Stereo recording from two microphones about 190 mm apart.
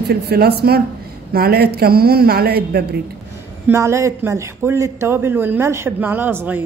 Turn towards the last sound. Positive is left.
turn(degrees=-10)  # may be behind; listen again after turning